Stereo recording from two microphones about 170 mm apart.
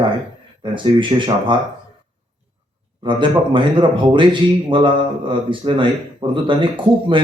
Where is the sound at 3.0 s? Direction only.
30° right (ahead or behind).